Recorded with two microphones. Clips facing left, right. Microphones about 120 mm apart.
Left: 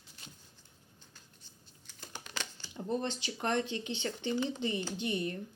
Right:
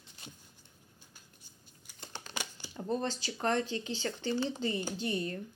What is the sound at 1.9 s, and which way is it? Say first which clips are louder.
Crumpling: right 1 dB; 10° right (ahead or behind).